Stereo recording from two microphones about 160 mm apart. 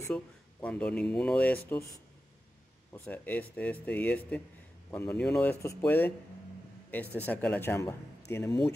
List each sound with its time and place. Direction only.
0.0 s speech: 10° left (ahead or behind)
2.9 s speech: 10° left (ahead or behind)
7.2 s speech: 10° left (ahead or behind)